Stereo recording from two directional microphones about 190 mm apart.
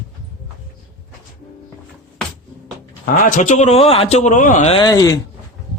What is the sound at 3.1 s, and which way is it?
A man's voice, 45° left (ahead or behind).